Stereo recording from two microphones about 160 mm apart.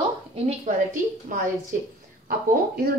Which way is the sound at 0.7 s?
50° right (ahead or behind).